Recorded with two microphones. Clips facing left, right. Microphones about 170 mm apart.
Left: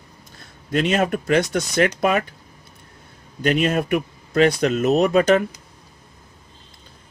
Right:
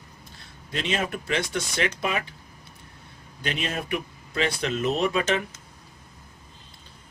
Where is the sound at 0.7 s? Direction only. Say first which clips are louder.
Left 9 dB; 45° left (ahead or behind).